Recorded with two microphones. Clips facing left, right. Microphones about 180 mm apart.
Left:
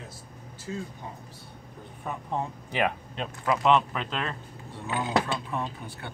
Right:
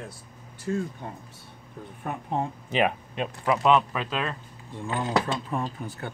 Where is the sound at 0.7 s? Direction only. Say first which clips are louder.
Right 7 dB; 55° right (ahead or behind).